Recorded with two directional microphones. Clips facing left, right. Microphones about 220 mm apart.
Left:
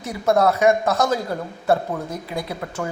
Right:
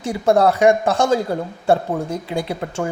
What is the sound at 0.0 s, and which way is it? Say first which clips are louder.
A man's voice: right 3 dB; 30° right (ahead or behind).